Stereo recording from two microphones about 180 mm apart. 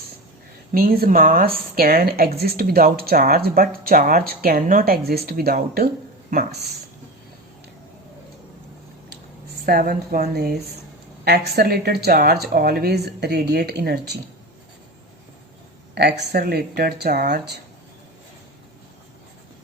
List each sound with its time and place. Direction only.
0.7 s speech: 55° right (ahead or behind)
9.6 s speech: 55° right (ahead or behind)
16.0 s speech: 60° right (ahead or behind)